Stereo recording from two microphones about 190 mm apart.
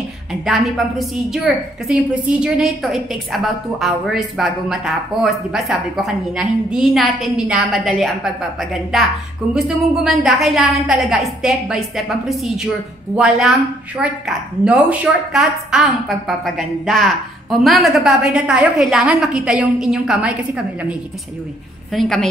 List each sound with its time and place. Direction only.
0.5 s a woman's voice: centre (ahead or behind)
21.9 s a woman's voice: centre (ahead or behind)